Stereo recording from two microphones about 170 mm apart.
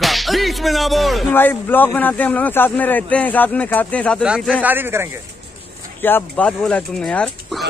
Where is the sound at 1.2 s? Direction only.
10° left (ahead or behind).